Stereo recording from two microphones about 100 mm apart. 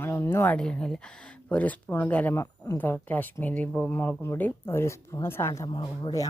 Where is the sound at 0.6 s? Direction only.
10° left (ahead or behind); by 5.6 s 25° left (ahead or behind).